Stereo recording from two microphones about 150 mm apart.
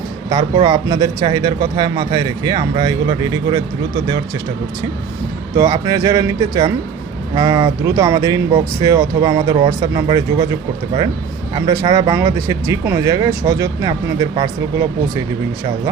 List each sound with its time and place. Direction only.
0.3 s speech: 30° right (ahead or behind)
5.5 s speech: 25° right (ahead or behind)
11.5 s speech: 30° right (ahead or behind)